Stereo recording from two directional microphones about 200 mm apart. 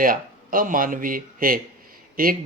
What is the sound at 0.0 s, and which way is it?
Speech, 45° right (ahead or behind).